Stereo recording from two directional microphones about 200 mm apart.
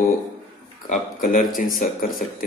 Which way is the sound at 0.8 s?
40° left (ahead or behind).